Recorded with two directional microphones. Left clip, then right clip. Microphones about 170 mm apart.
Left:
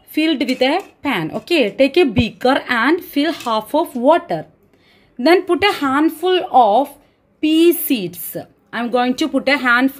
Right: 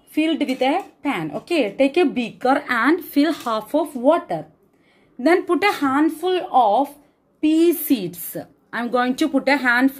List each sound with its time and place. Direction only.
0.1 s a woman's voice: 35° left (ahead or behind)
2.6 s speech: 20° left (ahead or behind)
3.6 s a woman's voice: 35° left (ahead or behind)
5.2 s a woman's voice: 25° left (ahead or behind)
5.9 s a woman's voice: 35° left (ahead or behind); by 9.8 s 15° left (ahead or behind)